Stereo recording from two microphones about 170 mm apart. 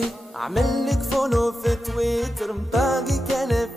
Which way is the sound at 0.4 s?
Centre (ahead or behind).